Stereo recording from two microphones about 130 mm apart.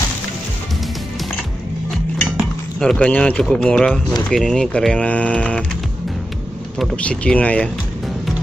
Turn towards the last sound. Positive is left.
turn(degrees=10)  # may be behind; listen again after turning